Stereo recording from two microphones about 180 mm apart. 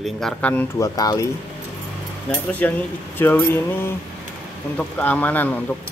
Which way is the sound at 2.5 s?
10° left (ahead or behind).